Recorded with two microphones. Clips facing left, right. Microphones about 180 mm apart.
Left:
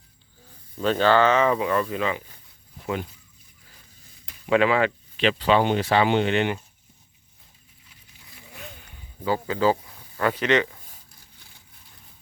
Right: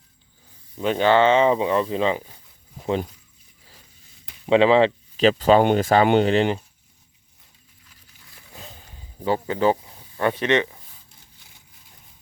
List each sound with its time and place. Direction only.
0.8 s speech: 15° right (ahead or behind)
2.7 s a sound: 35° right (ahead or behind)
4.4 s speech: 25° right (ahead or behind)
5.1 s speech: 40° right (ahead or behind)
8.5 s snake: 30° right (ahead or behind)